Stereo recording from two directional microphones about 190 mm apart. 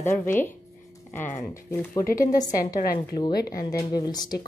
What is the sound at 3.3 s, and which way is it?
Speech, 55° left (ahead or behind).